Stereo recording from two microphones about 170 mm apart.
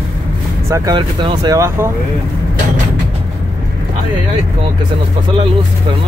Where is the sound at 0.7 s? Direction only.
20° right (ahead or behind).